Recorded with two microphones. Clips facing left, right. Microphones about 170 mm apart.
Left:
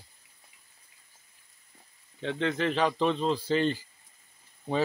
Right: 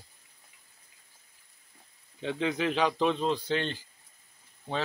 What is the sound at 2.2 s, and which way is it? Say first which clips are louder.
Speech: left 1 dB; 5° right (ahead or behind).